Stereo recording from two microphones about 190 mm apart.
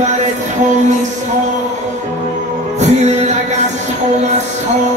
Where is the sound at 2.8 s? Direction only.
35° right (ahead or behind).